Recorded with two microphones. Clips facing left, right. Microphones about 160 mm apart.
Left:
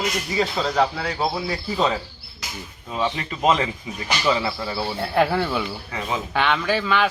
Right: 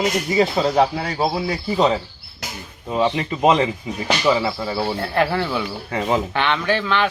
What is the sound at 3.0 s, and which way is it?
Speech, 15° right (ahead or behind).